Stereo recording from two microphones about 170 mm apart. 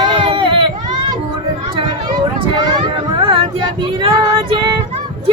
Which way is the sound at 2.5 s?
25° right (ahead or behind).